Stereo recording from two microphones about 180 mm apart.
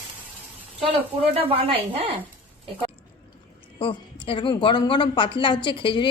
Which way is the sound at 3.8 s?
30° left (ahead or behind).